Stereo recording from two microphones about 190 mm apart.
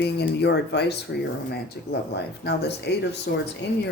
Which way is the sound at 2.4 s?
60° left (ahead or behind).